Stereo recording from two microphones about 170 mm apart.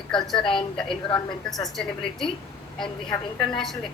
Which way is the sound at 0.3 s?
30° left (ahead or behind).